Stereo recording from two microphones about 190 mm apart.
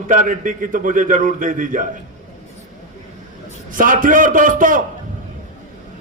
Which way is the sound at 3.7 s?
45° right (ahead or behind).